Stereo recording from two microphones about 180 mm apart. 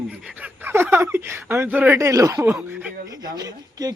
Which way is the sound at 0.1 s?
5° right (ahead or behind).